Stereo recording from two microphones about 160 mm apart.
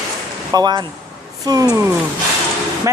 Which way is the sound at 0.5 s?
25° right (ahead or behind).